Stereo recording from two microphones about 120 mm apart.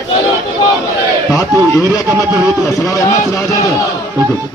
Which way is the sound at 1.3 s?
30° left (ahead or behind).